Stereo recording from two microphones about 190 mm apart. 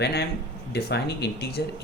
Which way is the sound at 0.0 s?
60° left (ahead or behind).